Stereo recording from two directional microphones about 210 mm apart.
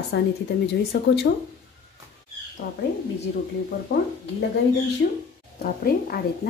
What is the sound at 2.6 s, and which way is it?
Speech, 50° left (ahead or behind).